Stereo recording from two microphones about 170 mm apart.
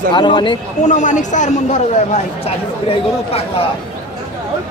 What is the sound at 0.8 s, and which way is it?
A man's voice, 45° left (ahead or behind).